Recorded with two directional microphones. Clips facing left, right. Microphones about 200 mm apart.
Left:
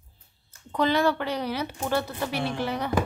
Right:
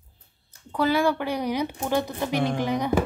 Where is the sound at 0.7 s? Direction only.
10° right (ahead or behind).